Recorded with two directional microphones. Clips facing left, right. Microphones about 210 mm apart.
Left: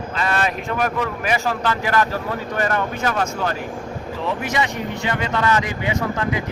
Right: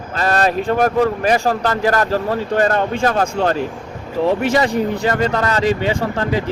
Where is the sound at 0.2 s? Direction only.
40° right (ahead or behind).